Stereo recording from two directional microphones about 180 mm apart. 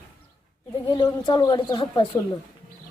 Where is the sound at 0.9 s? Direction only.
25° left (ahead or behind).